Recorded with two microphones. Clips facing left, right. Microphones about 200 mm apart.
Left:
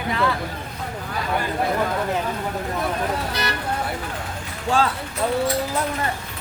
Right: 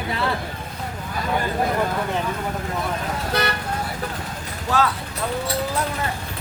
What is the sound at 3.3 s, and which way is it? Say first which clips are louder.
Speech: right 4 dB; 55° right (ahead or behind).